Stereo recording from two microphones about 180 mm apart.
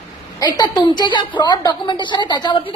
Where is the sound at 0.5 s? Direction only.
25° left (ahead or behind).